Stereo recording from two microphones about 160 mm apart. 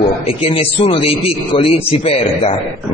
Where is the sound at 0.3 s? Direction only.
35° left (ahead or behind).